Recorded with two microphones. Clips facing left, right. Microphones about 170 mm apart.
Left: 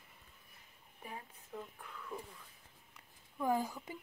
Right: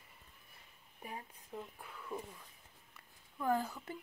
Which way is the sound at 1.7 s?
10° right (ahead or behind).